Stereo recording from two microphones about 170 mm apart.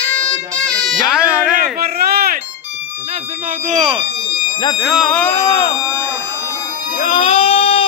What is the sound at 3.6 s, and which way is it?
Speech, 35° right (ahead or behind).